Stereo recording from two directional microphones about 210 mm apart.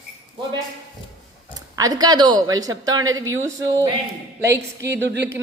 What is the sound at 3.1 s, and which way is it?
Speech, 70° right (ahead or behind).